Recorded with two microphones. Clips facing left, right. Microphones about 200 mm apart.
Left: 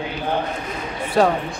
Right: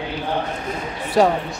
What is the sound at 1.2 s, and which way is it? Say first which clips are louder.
Speech: right 1 dB; 15° right (ahead or behind).